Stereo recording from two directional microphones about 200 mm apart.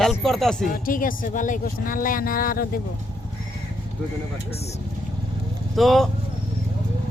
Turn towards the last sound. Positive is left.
turn(degrees=0)  # may be behind; listen again after turning